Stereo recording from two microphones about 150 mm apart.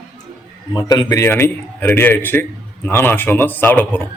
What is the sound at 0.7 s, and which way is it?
A man's voice, 25° left (ahead or behind).